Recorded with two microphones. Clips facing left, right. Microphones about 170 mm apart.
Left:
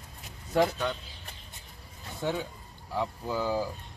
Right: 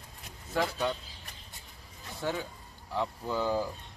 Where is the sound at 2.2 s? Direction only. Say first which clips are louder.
Left 2 dB; 15° left (ahead or behind).